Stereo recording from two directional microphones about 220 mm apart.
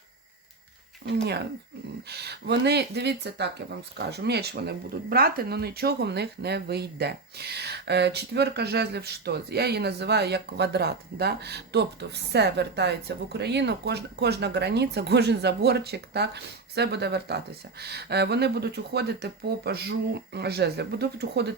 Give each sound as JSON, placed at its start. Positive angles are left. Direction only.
{"t": 2.0, "sound": "speech", "side_deg": -50}